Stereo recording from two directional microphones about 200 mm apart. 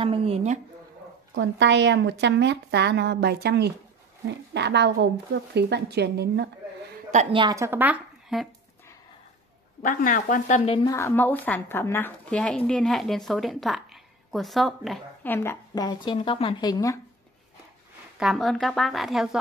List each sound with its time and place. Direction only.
0.0 s a woman's voice: 30° right (ahead or behind)
1.3 s a woman's voice: 60° right (ahead or behind)
7.3 s a woman's voice: 20° right (ahead or behind)
9.8 s speech: 40° left (ahead or behind)
10.9 s speech: 15° left (ahead or behind)
15.3 s speech: 10° left (ahead or behind)
18.2 s speech: centre (ahead or behind)